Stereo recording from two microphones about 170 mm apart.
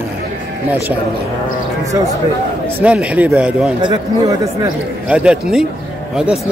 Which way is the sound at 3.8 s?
25° right (ahead or behind).